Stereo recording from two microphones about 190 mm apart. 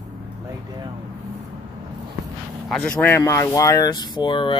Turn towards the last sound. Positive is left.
turn(degrees=25)  # may be behind; listen again after turning